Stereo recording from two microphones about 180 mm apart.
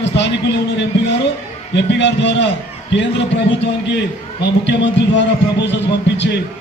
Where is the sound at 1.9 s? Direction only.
75° left (ahead or behind).